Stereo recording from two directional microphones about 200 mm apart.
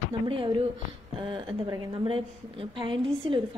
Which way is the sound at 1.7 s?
25° right (ahead or behind).